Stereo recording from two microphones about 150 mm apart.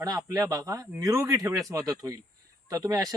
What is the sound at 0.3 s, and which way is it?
Speech, 25° right (ahead or behind).